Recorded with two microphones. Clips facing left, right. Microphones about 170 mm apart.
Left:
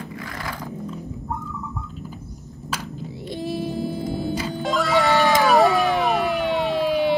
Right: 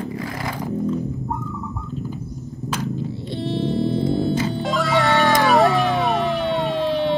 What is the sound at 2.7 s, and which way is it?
Music, 10° left (ahead or behind).